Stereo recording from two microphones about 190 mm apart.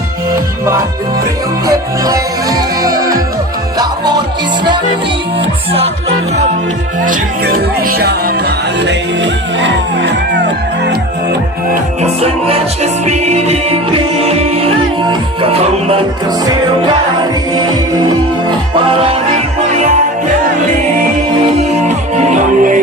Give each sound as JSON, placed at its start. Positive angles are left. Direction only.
{"t": 1.6, "sound": "music", "side_deg": -20}
{"t": 7.0, "sound": "music", "side_deg": -45}
{"t": 12.0, "sound": "music", "side_deg": -35}
{"t": 18.8, "sound": "music", "side_deg": -30}
{"t": 21.8, "sound": "music", "side_deg": -40}